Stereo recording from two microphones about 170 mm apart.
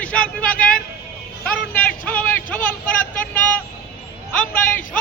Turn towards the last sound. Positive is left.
turn(degrees=10)  # may be behind; listen again after turning